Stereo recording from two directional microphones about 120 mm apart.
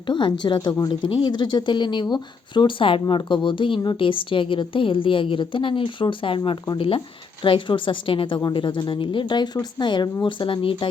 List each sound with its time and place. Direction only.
0.1 s a woman's voice: 40° left (ahead or behind)